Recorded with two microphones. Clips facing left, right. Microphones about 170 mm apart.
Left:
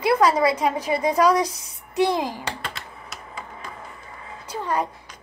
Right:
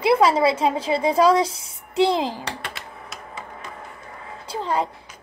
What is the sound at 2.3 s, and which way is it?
Speech, 30° left (ahead or behind).